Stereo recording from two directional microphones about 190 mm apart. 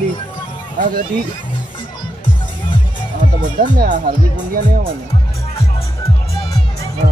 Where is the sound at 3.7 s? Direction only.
40° right (ahead or behind).